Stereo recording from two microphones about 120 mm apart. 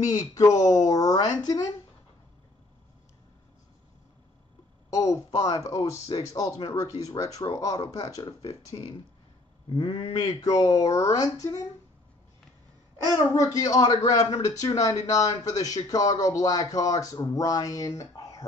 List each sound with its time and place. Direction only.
0.0 s a woman's voice: 30° left (ahead or behind)
4.9 s speech: 25° left (ahead or behind)
9.7 s speech: 40° left (ahead or behind)
10.5 s speech: 30° left (ahead or behind)
13.0 s speech: 25° left (ahead or behind)